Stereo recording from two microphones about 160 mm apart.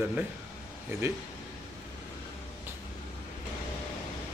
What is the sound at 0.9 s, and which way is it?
Speech, 15° right (ahead or behind).